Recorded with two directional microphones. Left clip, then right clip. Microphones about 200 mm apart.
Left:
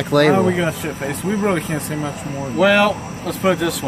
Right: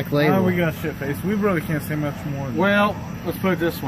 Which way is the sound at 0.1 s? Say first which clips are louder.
Left 6 dB; 15° left (ahead or behind).